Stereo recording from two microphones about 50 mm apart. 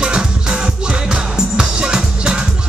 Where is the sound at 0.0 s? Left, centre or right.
Centre.